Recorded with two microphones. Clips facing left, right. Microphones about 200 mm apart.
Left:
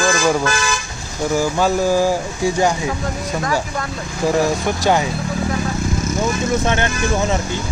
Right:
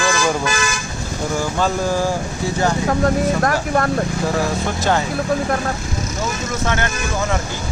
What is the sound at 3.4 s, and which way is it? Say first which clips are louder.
Speech: right 4 dB; 60° right (ahead or behind).